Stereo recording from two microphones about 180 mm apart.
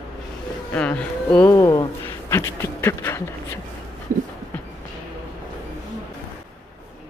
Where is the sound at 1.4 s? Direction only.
20° left (ahead or behind).